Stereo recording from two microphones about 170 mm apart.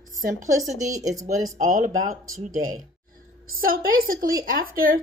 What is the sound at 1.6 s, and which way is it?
Speech, 50° right (ahead or behind).